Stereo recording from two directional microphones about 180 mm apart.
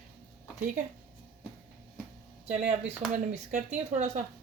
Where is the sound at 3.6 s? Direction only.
40° right (ahead or behind).